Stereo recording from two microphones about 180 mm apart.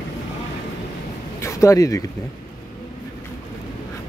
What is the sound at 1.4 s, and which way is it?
Speech, 15° left (ahead or behind).